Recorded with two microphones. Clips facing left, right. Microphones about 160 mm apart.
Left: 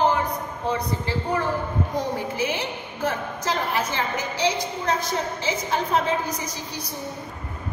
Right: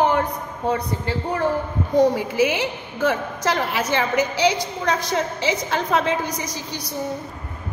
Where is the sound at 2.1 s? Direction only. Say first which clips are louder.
Right 6 dB; 90° right.